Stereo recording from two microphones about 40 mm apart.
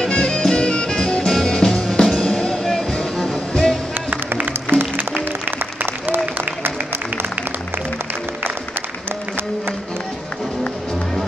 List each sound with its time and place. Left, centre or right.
0.1 s music: centre
4.6 s music: right
5.8 s applause: right